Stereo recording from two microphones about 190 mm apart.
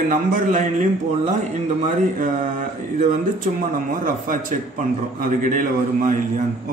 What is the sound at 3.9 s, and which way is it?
A man's voice, 45° right (ahead or behind).